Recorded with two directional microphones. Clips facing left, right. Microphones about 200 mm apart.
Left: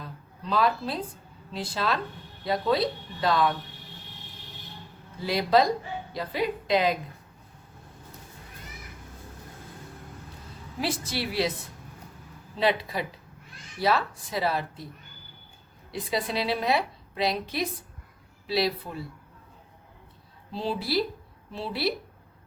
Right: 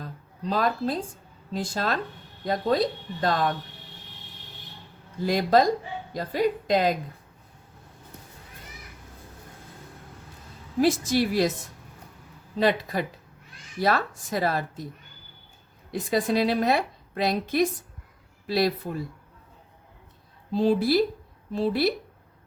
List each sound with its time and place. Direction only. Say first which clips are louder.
0.0 s a sound: right 5 dB; 45° right (ahead or behind)
1.5 s a woman's voice: right 1 dB; 45° right (ahead or behind)
5.2 s a woman's voice: right 2 dB; 45° right (ahead or behind)
10.8 s a woman's voice: right 9 dB; 45° right (ahead or behind)
15.9 s a woman's voice: right 5 dB; 50° right (ahead or behind)
20.5 s a woman's voice: right 8 dB; 50° right (ahead or behind)